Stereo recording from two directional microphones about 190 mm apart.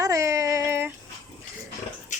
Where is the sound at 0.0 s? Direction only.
15° right (ahead or behind).